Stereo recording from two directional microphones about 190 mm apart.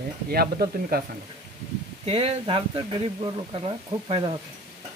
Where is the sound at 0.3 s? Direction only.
50° right (ahead or behind).